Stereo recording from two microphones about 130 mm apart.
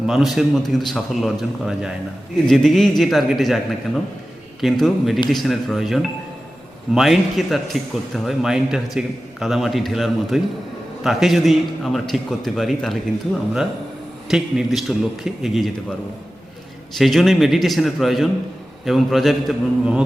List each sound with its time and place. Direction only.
0.0 s a man's voice: centre (ahead or behind)
4.6 s a man's voice: centre (ahead or behind)
14.3 s a man's voice: 5° right (ahead or behind)